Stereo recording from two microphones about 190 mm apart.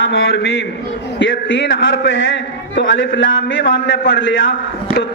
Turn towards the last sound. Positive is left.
turn(degrees=70)  # may be behind; listen again after turning